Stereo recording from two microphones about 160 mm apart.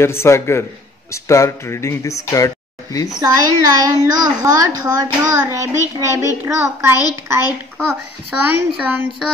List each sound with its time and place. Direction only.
0.0 s a man's voice: 15° left (ahead or behind)
3.2 s a child's voice: 25° right (ahead or behind)
8.3 s a child's voice: 10° right (ahead or behind)